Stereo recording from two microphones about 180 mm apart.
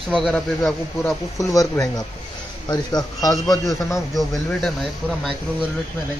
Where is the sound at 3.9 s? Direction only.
Centre (ahead or behind).